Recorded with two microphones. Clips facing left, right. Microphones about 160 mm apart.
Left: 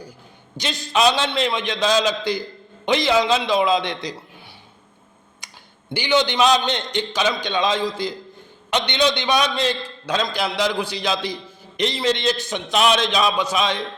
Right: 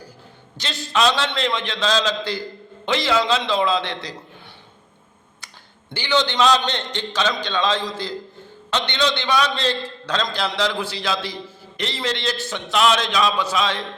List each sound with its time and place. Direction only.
0.5 s a man's voice: 15° left (ahead or behind)
5.9 s a man's voice: 15° left (ahead or behind)